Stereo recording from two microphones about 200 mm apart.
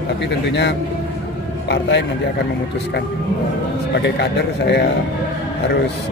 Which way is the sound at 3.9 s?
60° left (ahead or behind).